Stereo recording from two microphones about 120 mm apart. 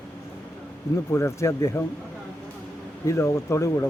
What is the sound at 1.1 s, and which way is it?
Speech, 25° left (ahead or behind).